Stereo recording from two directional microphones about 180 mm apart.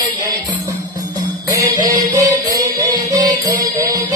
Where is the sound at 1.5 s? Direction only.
20° right (ahead or behind).